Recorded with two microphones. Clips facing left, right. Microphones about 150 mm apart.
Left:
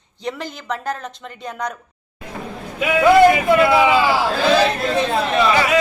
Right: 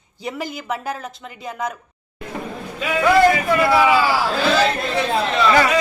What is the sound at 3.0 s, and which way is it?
A man's voice, 15° left (ahead or behind).